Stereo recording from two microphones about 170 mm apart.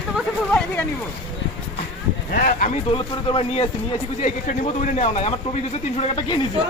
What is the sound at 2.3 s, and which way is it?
Speech, 55° left (ahead or behind).